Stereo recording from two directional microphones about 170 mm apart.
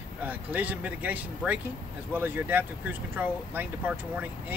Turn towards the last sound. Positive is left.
turn(degrees=-10)  # may be behind; listen again after turning